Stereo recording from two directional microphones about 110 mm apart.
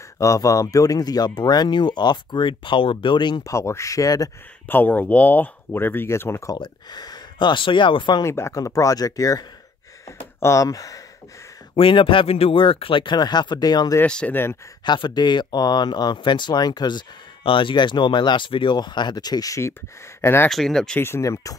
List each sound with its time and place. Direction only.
0.2 s speech: 30° left (ahead or behind); by 3.4 s 45° left (ahead or behind)
3.4 s speech: 25° left (ahead or behind)
4.6 s speech: 15° left (ahead or behind)
6.5 s speech: 40° left (ahead or behind)
8.2 s speech: 25° left (ahead or behind)
10.0 s a sound: 30° left (ahead or behind)
11.7 s speech: 55° left (ahead or behind); by 13.9 s 35° left (ahead or behind)
14.0 s speech: 10° left (ahead or behind)
14.9 s speech: 45° left (ahead or behind); by 20.4 s 20° left (ahead or behind)
20.4 s speech: 5° left (ahead or behind)
21.0 s speech: 25° left (ahead or behind)